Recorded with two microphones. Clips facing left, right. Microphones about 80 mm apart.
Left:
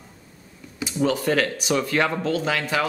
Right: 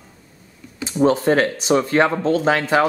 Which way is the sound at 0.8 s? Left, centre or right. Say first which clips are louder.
Right 6 dB; right.